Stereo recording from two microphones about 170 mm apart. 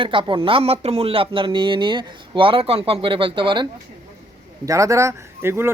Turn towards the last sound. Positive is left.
turn(degrees=-15)  # may be behind; listen again after turning